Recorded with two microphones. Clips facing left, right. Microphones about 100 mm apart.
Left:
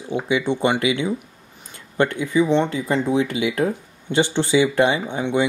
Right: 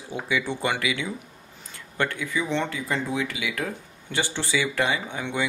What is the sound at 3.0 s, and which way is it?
Speech, 30° left (ahead or behind).